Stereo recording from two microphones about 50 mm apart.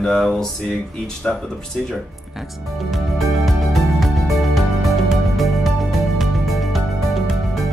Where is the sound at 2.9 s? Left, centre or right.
Centre.